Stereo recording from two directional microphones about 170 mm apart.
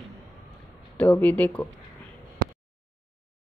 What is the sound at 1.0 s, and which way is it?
Speech, 10° left (ahead or behind).